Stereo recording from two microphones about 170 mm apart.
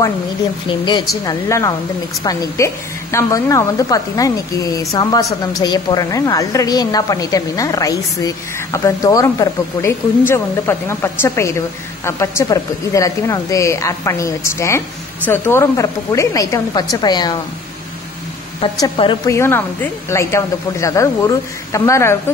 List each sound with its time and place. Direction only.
0.7 s a woman's voice: 25° left (ahead or behind)
18.6 s a woman's voice: 30° left (ahead or behind)
19.3 s speech: 15° left (ahead or behind)